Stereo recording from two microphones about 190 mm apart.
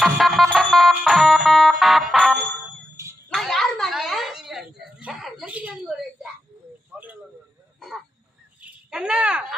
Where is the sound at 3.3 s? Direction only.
Centre (ahead or behind).